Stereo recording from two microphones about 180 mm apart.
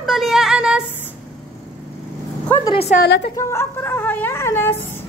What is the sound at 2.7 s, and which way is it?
Speech, 40° left (ahead or behind).